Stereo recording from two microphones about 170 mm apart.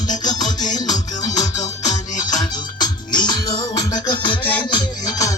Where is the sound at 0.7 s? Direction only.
20° left (ahead or behind).